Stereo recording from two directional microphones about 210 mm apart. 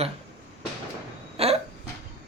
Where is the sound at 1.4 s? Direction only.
30° right (ahead or behind).